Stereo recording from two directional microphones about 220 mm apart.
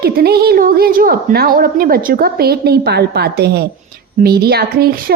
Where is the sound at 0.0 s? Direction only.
45° right (ahead or behind).